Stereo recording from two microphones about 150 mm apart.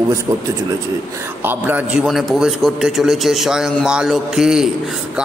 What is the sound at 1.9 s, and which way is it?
A man's voice, centre (ahead or behind).